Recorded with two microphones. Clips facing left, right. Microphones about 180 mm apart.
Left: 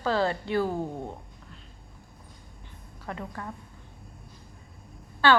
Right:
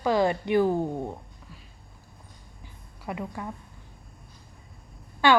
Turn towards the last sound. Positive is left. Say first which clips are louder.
# right 1 dB
turn(degrees=-15)  # may be behind; listen again after turning